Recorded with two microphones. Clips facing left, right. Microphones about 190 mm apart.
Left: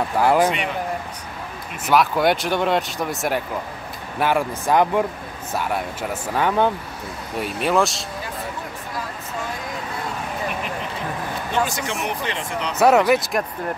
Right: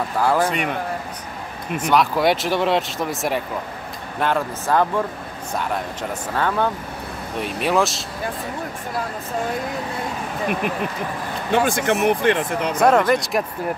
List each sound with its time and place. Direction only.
0.2 s speech: 15° left (ahead or behind)
1.8 s speech: 5° left (ahead or behind)
4.2 s speech: 10° left (ahead or behind)
7.3 s speech: centre (ahead or behind)
11.5 s speech: 55° right (ahead or behind)
12.7 s speech: 5° left (ahead or behind)